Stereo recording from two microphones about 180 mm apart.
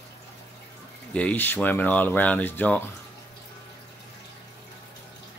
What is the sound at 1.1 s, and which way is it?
Speech, 10° left (ahead or behind).